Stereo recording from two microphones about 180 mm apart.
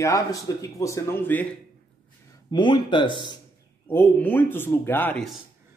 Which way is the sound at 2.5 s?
25° left (ahead or behind).